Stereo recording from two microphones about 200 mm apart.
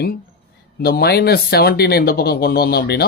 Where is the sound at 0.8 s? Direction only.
50° left (ahead or behind).